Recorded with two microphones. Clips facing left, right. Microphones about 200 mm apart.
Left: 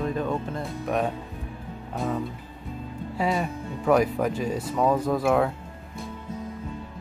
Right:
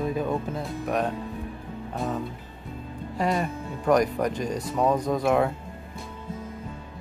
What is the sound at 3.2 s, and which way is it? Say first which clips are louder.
Speech: even; centre (ahead or behind).